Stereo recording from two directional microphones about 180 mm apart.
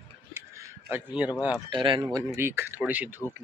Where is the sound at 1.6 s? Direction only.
25° right (ahead or behind).